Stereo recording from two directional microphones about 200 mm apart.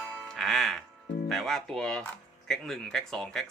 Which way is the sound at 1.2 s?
Centre (ahead or behind).